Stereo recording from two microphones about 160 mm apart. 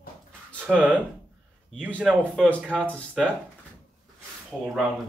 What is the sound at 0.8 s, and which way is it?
Speech, 10° right (ahead or behind).